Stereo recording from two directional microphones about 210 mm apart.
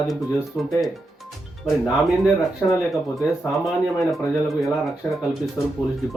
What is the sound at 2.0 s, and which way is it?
Speech, centre (ahead or behind).